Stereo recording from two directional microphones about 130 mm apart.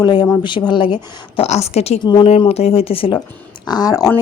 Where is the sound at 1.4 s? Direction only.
55° left (ahead or behind).